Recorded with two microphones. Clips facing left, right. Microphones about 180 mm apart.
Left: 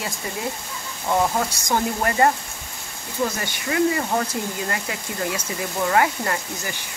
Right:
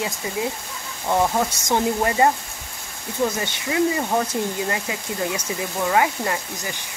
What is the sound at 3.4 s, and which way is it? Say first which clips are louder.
Speech: even; 20° right (ahead or behind).